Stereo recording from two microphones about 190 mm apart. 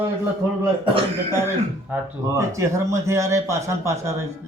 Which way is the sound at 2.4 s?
15° right (ahead or behind).